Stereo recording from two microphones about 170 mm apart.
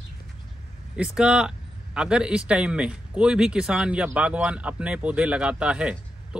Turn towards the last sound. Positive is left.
turn(degrees=-5)  # may be behind; listen again after turning